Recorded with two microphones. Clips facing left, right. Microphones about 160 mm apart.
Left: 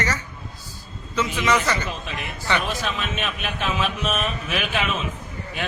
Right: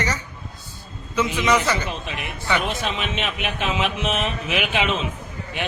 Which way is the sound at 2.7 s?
25° right (ahead or behind).